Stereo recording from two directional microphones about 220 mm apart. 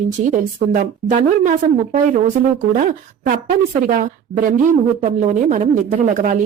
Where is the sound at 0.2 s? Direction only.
35° right (ahead or behind).